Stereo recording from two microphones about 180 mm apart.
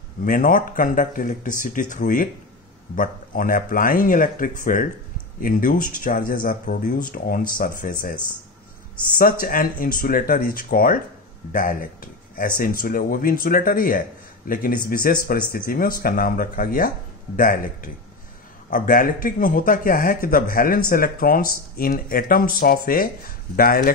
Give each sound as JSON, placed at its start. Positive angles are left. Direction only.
{"t": 0.2, "sound": "speech", "side_deg": 50}